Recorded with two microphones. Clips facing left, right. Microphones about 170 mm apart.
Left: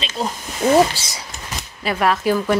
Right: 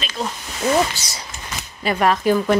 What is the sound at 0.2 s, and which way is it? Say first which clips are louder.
Speech: left 3 dB; 30° left (ahead or behind).